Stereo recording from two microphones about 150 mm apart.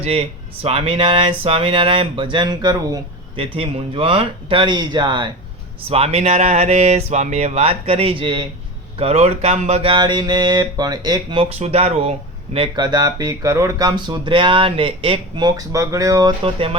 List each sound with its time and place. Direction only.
0.0 s speech: 40° right (ahead or behind)
5.9 s speech: 45° right (ahead or behind)
12.5 s speech: 30° right (ahead or behind)
15.4 s speech: 25° right (ahead or behind)
16.4 s speech: 40° right (ahead or behind)